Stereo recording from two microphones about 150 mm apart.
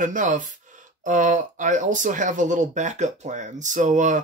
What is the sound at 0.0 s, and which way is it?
Speech, 60° right (ahead or behind).